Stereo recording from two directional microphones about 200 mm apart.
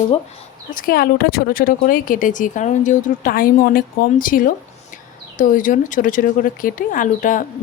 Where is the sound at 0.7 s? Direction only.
45° left (ahead or behind).